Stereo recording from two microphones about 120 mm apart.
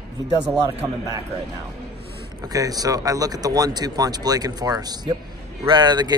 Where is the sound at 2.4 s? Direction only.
30° right (ahead or behind).